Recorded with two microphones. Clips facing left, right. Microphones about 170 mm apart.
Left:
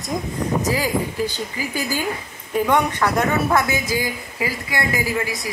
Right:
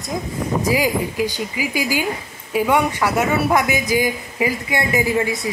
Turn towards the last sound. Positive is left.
turn(degrees=-25)  # may be behind; listen again after turning